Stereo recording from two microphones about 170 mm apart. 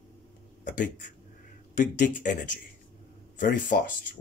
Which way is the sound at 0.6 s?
50° left (ahead or behind).